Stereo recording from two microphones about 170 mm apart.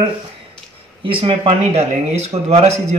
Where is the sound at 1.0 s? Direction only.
30° right (ahead or behind).